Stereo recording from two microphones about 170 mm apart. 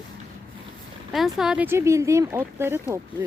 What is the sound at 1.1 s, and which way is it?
Speech, centre (ahead or behind).